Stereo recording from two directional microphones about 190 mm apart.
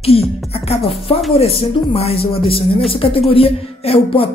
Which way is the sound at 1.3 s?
30° left (ahead or behind).